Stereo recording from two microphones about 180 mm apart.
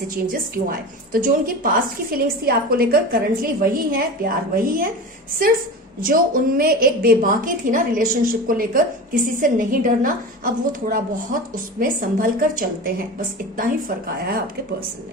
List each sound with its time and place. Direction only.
0.2 s a woman's voice: 55° right (ahead or behind)
6.1 s a woman's voice: 50° right (ahead or behind)